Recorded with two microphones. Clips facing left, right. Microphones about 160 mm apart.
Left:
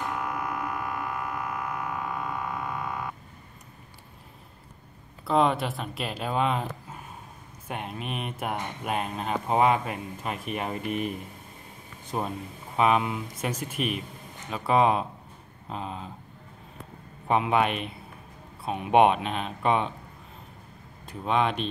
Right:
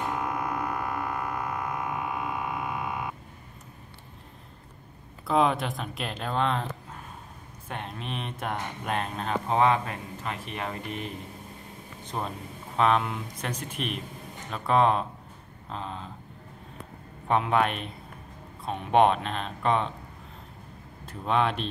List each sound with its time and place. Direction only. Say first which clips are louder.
0.1 s a sound: right 1 dB; 25° right (ahead or behind)
5.2 s speech: left 1 dB; centre (ahead or behind)
12.1 s speech: left 3 dB; 10° left (ahead or behind)
17.3 s speech: left 1 dB; 5° left (ahead or behind)
21.0 s speech: even; centre (ahead or behind)